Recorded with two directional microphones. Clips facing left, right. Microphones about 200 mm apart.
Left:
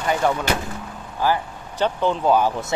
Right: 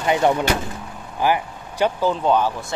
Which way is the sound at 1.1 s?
15° right (ahead or behind).